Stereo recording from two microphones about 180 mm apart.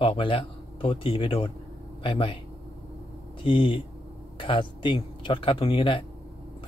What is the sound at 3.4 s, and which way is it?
Speech, 30° left (ahead or behind).